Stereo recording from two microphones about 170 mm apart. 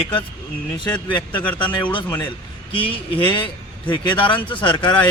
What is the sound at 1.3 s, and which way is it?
Speech, 10° left (ahead or behind).